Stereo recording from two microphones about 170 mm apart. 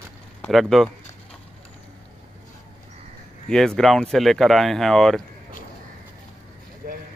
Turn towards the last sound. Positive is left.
turn(degrees=-60)  # may be behind; listen again after turning